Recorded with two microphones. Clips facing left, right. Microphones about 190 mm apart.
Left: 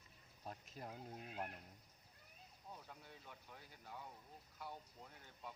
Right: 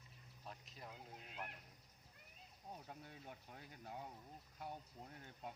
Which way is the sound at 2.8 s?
45° right (ahead or behind).